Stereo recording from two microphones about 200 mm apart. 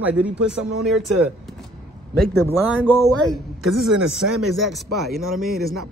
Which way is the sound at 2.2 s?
50° right (ahead or behind).